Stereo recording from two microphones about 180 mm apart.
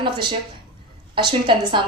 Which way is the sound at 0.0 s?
25° right (ahead or behind).